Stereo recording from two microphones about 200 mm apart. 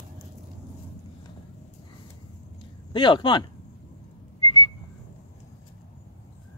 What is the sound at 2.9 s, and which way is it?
Speech, 20° left (ahead or behind).